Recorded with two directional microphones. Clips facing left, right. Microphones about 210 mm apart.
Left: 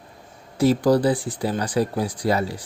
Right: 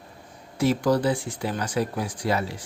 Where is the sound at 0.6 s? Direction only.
35° left (ahead or behind).